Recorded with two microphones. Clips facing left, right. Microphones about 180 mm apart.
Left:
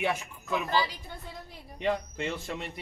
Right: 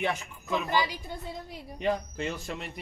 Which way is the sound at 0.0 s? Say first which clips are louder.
Even; 5° left (ahead or behind).